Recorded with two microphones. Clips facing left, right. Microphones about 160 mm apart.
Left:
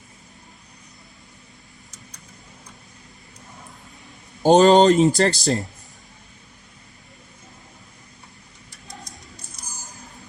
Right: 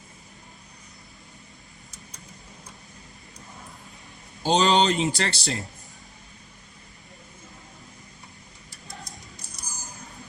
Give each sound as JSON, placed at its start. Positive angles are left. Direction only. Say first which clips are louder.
{"t": 4.4, "sound": "speech", "louder": "left 8 dB", "side_deg": 45}
{"t": 9.6, "sound": "music", "louder": "even", "side_deg": 0}